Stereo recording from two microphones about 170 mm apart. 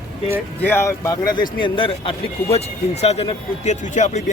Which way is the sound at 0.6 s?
15° left (ahead or behind).